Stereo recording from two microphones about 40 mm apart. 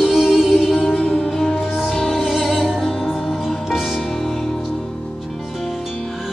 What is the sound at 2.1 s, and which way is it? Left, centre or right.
Music, centre.